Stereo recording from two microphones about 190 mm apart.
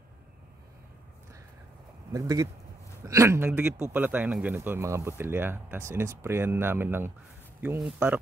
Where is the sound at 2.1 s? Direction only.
20° right (ahead or behind).